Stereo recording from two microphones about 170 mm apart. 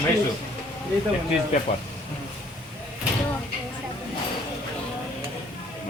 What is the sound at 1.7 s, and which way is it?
Speech, 40° left (ahead or behind).